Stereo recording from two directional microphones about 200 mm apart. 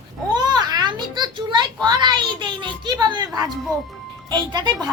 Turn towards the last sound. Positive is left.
turn(degrees=-20)  # may be behind; listen again after turning